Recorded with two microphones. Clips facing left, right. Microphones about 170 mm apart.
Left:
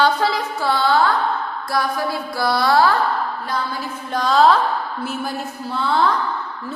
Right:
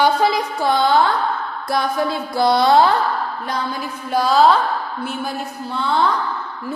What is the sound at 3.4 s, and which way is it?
A woman's voice, 15° right (ahead or behind).